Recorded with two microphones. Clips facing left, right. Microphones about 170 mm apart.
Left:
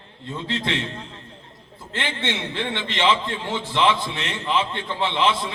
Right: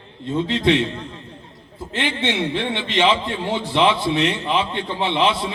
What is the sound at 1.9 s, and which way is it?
A man's voice, 15° right (ahead or behind).